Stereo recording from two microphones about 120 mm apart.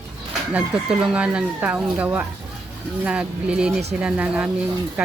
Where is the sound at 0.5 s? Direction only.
10° right (ahead or behind).